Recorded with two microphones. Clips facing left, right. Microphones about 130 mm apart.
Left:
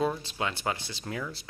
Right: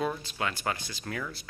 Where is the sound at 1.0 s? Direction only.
15° left (ahead or behind).